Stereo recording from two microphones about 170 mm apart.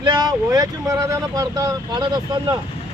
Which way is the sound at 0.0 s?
25° right (ahead or behind).